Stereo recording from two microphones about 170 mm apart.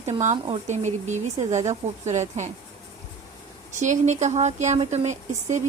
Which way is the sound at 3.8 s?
45° right (ahead or behind).